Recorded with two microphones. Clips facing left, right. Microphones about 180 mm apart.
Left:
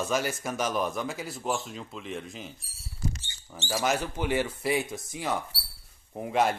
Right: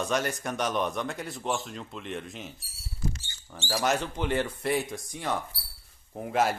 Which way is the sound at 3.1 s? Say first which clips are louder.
Even; 20° left (ahead or behind).